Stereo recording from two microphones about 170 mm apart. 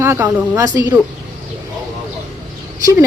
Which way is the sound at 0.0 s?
10° right (ahead or behind).